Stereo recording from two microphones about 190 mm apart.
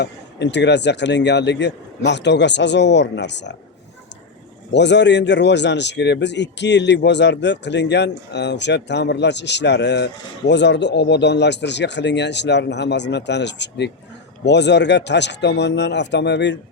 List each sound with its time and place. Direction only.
0.0 s speech: 65° left (ahead or behind)
4.7 s speech: 65° left (ahead or behind)